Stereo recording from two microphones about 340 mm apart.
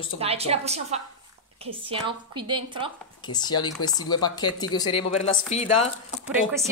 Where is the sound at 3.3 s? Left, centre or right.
Centre.